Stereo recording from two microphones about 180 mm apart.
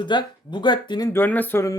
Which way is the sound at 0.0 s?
25° left (ahead or behind).